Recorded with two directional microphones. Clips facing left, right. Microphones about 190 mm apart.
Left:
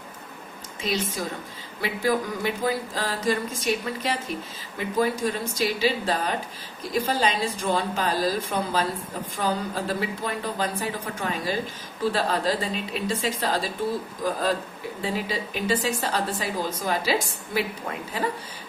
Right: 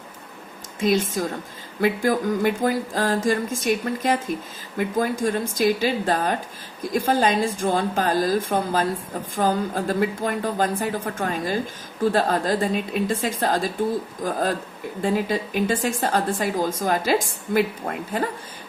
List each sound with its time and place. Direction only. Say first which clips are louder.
0.8 s a woman's voice: right 7 dB; 50° right (ahead or behind)